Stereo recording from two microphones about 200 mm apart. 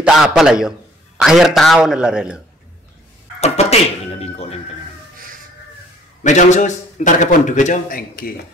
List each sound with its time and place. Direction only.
0.0 s a man's voice: 5° right (ahead or behind)
3.3 s speech: 30° left (ahead or behind)
6.2 s a man's voice: 35° left (ahead or behind)